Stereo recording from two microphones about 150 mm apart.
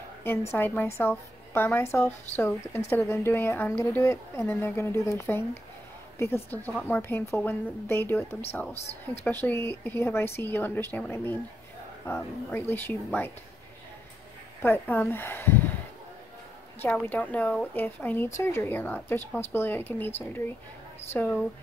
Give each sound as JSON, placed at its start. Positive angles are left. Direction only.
{"t": 0.2, "sound": "speech", "side_deg": 15}
{"t": 14.6, "sound": "speech", "side_deg": 15}
{"t": 16.8, "sound": "speech", "side_deg": 15}
{"t": 21.1, "sound": "speech", "side_deg": 10}